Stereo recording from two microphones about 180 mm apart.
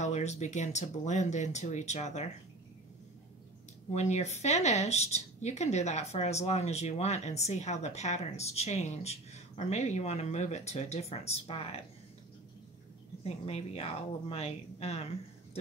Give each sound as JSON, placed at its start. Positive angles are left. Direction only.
{"t": 0.0, "sound": "a woman's voice", "side_deg": 40}
{"t": 3.9, "sound": "a woman's voice", "side_deg": 40}
{"t": 13.2, "sound": "a woman's voice", "side_deg": 35}